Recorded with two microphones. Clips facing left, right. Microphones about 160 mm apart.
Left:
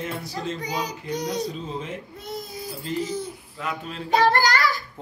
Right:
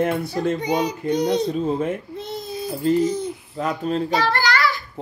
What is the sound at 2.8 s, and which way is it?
Speech, 40° right (ahead or behind).